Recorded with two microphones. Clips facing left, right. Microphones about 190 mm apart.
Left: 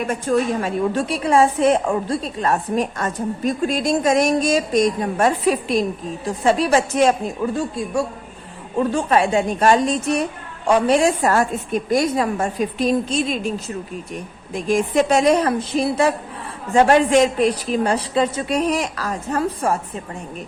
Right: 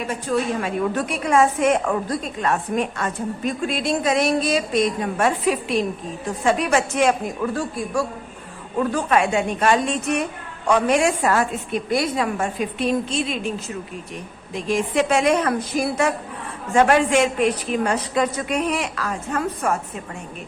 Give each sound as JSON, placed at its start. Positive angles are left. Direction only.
{"t": 0.1, "sound": "a woman's voice", "side_deg": 45}
{"t": 0.9, "sound": "a woman's voice", "side_deg": 30}
{"t": 7.5, "sound": "a woman's voice", "side_deg": 25}
{"t": 14.5, "sound": "a woman's voice", "side_deg": 45}